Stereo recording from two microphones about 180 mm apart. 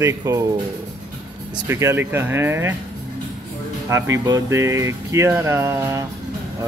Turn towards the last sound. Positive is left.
turn(degrees=-15)  # may be behind; listen again after turning